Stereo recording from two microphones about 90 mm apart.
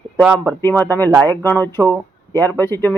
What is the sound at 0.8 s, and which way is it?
Speech, 25° left (ahead or behind).